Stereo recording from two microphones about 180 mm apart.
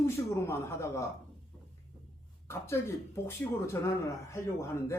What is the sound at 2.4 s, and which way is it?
Speech, 15° left (ahead or behind).